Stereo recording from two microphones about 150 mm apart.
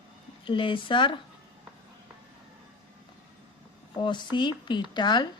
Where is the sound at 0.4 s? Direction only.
35° left (ahead or behind).